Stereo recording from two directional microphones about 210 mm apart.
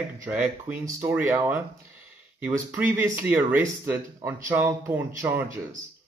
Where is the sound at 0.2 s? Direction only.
5° right (ahead or behind).